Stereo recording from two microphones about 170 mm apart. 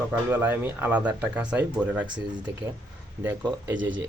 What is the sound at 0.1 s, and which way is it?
Speech, 10° right (ahead or behind).